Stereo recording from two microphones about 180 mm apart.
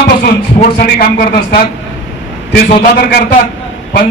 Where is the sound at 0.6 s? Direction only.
50° left (ahead or behind).